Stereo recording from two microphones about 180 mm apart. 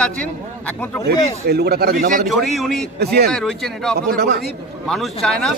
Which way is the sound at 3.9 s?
60° right (ahead or behind).